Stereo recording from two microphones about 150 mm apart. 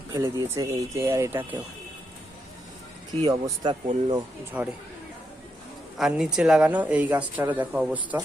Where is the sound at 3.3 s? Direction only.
25° right (ahead or behind).